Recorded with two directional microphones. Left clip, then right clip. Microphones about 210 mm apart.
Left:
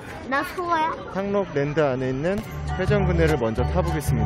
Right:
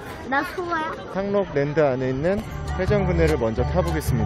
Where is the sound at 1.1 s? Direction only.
Centre (ahead or behind).